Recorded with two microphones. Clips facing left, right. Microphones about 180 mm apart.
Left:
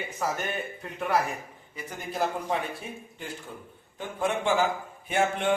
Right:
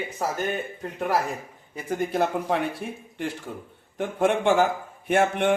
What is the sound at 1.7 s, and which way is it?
A man's voice, 55° right (ahead or behind).